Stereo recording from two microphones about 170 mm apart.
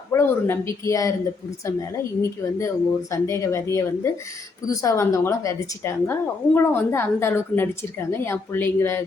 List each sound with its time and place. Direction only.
0.1 s speech: 15° left (ahead or behind)
2.2 s a woman's voice: 15° left (ahead or behind)